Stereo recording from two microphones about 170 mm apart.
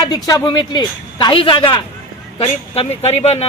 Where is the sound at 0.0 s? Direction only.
25° left (ahead or behind).